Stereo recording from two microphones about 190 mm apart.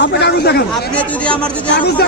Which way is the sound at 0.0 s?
60° left (ahead or behind).